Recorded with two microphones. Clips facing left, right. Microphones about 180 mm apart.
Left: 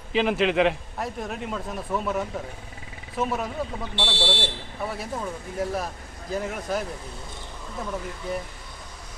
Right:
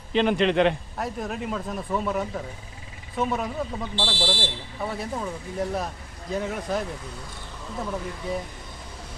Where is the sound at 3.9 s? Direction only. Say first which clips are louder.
Left 1 dB; 65° left (ahead or behind).